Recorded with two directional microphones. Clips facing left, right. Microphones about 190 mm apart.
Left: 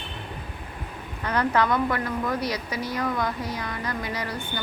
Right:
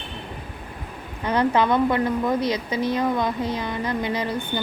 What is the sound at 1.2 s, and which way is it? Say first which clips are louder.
A woman's voice: right 3 dB; 20° right (ahead or behind).